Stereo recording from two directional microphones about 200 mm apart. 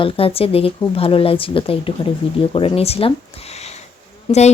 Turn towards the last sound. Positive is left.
turn(degrees=25)  # may be behind; listen again after turning